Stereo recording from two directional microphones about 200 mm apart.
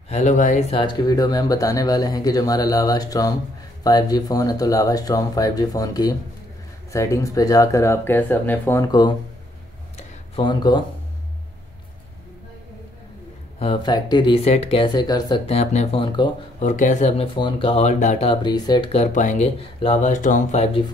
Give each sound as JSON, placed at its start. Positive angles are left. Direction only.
{"t": 0.1, "sound": "speech", "side_deg": 35}
{"t": 9.9, "sound": "a sound", "side_deg": 25}
{"t": 13.6, "sound": "speech", "side_deg": 25}
{"t": 16.5, "sound": "speech", "side_deg": 40}